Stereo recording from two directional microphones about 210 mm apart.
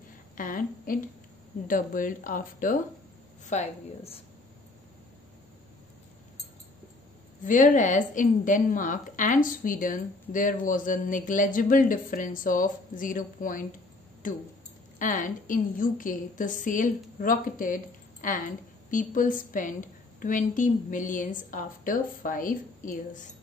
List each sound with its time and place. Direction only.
0.4 s a woman's voice: 40° left (ahead or behind)
7.4 s a woman's voice: 40° left (ahead or behind)
15.0 s a woman's voice: 40° left (ahead or behind)